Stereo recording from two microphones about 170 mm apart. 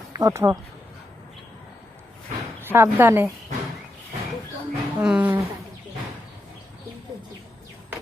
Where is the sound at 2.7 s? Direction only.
15° right (ahead or behind).